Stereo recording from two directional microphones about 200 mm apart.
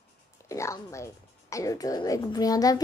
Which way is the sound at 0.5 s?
15° left (ahead or behind).